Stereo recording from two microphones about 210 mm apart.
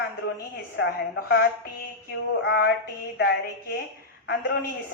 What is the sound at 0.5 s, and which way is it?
A woman's voice, 55° left (ahead or behind).